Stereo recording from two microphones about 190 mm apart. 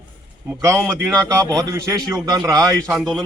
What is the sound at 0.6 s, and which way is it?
A man's voice, 15° right (ahead or behind).